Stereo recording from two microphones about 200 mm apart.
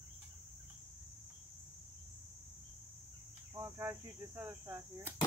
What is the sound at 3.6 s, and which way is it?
Speech, 10° right (ahead or behind).